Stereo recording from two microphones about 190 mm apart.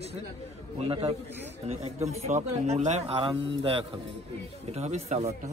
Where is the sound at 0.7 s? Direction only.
30° right (ahead or behind).